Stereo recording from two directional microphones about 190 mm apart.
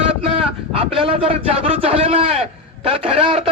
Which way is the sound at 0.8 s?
30° right (ahead or behind).